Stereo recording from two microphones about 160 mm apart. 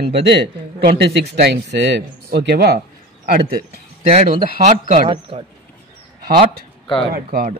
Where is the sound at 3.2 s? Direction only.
65° right (ahead or behind).